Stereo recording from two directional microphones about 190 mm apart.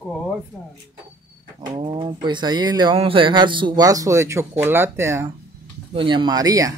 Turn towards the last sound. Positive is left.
turn(degrees=-20)  # may be behind; listen again after turning